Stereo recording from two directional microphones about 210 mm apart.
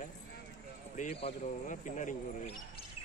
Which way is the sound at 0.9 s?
30° left (ahead or behind).